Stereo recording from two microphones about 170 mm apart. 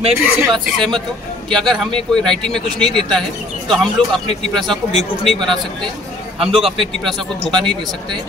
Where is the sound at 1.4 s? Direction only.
5° left (ahead or behind).